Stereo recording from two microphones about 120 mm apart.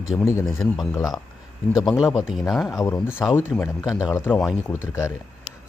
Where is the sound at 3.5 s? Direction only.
5° left (ahead or behind).